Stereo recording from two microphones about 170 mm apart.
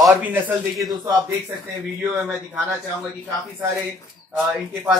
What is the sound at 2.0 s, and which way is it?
Speech, 10° right (ahead or behind).